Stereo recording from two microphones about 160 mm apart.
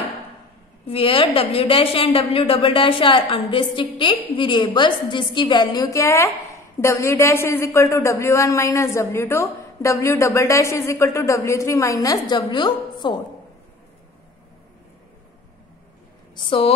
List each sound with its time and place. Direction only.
0.8 s a woman's voice: 35° left (ahead or behind)
16.3 s a woman's voice: 35° left (ahead or behind)